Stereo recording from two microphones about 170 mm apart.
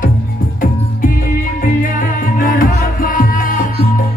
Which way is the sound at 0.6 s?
55° left (ahead or behind).